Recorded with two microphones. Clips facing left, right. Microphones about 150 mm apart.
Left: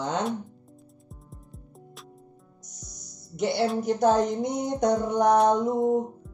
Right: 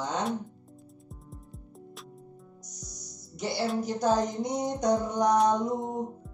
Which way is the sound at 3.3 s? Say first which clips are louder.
Left 5 dB; 60° left (ahead or behind).